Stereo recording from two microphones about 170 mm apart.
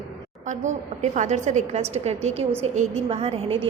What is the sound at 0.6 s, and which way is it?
A woman's voice, 45° right (ahead or behind).